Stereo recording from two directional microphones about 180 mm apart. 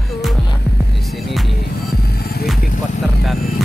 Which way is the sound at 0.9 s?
Centre (ahead or behind).